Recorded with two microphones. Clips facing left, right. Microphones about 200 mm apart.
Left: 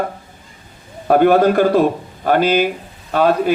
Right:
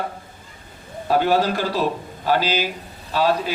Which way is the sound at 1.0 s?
55° left (ahead or behind).